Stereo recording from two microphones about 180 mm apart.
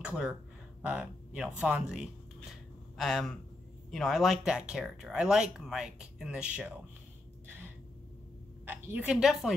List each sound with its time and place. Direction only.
0.0 s speech: 5° right (ahead or behind)
7.4 s finger snapping: 10° right (ahead or behind)
8.6 s a woman's voice: 10° right (ahead or behind)